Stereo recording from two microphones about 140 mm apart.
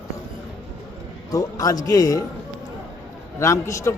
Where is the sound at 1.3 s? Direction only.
25° left (ahead or behind).